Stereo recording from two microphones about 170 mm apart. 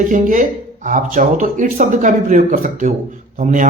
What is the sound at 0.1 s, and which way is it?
A man's voice, 50° right (ahead or behind).